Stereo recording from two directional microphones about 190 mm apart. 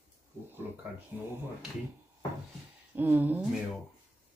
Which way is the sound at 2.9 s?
10° right (ahead or behind).